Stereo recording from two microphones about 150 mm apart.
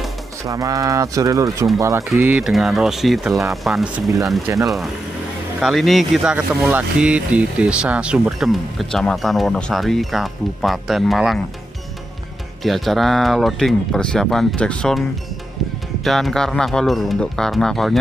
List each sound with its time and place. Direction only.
0.4 s speech: 20° right (ahead or behind)
2.4 s speech: centre (ahead or behind)
12.6 s speech: centre (ahead or behind)